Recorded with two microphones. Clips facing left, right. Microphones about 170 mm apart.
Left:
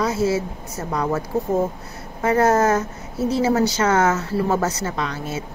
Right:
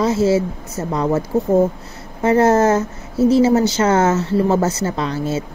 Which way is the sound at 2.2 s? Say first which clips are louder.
Right 4 dB; 25° right (ahead or behind).